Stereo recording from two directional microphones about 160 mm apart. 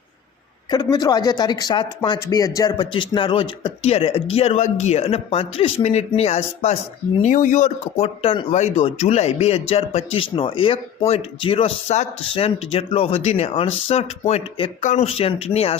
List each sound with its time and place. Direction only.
0.7 s speech: 25° left (ahead or behind); by 6.7 s 40° left (ahead or behind)
7.2 s speech: 50° left (ahead or behind)